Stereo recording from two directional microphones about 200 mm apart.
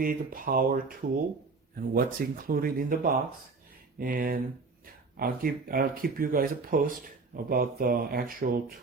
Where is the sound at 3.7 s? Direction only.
45° right (ahead or behind).